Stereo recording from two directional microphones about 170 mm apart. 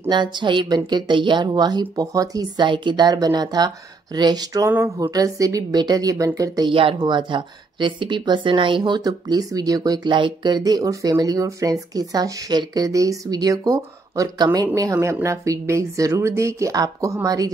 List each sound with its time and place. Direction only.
0.1 s a woman's voice: 25° right (ahead or behind)